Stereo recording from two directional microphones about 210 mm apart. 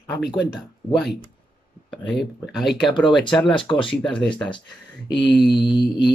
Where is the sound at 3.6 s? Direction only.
25° left (ahead or behind).